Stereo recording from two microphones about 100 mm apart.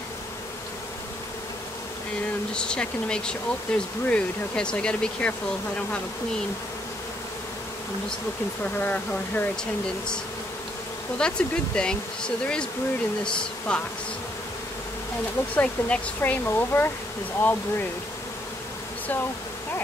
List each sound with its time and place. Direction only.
2.5 s speech: 10° left (ahead or behind)
8.8 s speech: 15° left (ahead or behind)
11.1 s speech: 10° left (ahead or behind)
13.7 s speech: 10° left (ahead or behind)
15.5 s speech: 15° left (ahead or behind)